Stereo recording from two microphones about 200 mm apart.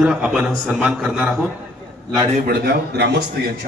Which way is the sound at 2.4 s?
55° right (ahead or behind).